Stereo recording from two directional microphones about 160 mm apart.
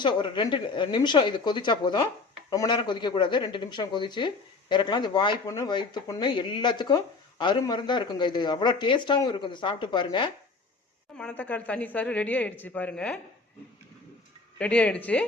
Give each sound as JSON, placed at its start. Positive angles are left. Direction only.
{"t": 0.0, "sound": "speech", "side_deg": 30}
{"t": 11.2, "sound": "speech", "side_deg": 10}
{"t": 14.6, "sound": "speech", "side_deg": 5}